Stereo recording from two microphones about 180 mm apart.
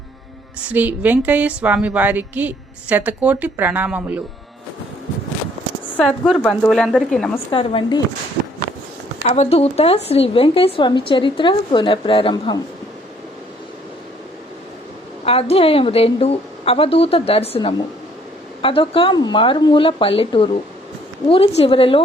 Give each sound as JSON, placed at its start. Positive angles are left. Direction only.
{"t": 0.7, "sound": "a woman's voice", "side_deg": -10}
{"t": 6.0, "sound": "speech", "side_deg": 0}
{"t": 7.3, "sound": "speech", "side_deg": 30}
{"t": 9.2, "sound": "speech", "side_deg": 35}
{"t": 15.2, "sound": "a woman's voice", "side_deg": 35}